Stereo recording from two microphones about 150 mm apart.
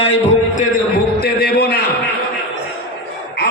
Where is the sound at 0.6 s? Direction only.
80° left.